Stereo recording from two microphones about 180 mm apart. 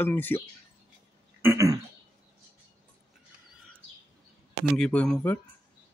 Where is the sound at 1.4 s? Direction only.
15° right (ahead or behind).